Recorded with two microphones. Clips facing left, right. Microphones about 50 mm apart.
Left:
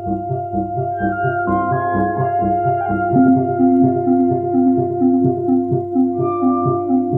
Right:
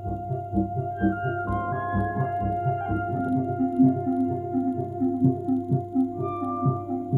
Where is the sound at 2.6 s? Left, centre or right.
Left.